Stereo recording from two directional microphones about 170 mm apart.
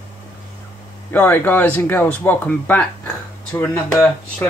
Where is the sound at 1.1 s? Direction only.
10° left (ahead or behind).